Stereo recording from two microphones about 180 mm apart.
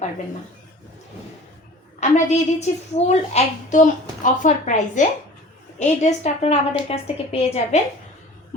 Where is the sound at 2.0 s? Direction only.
40° left (ahead or behind).